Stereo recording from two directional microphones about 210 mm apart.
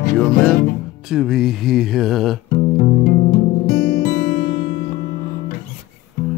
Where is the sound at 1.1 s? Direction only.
Centre (ahead or behind).